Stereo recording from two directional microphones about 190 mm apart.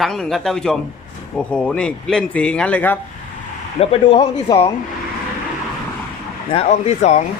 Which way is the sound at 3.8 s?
30° left (ahead or behind).